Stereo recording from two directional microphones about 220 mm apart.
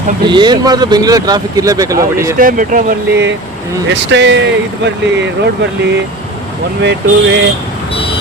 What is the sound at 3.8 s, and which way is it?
Speech, 55° right (ahead or behind).